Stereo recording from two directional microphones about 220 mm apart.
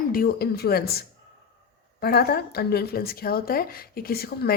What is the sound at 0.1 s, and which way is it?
A woman's voice, 45° left (ahead or behind).